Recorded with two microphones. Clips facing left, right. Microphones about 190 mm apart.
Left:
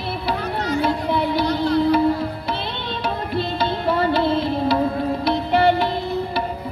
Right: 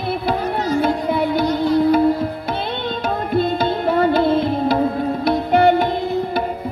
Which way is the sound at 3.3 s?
50° right (ahead or behind).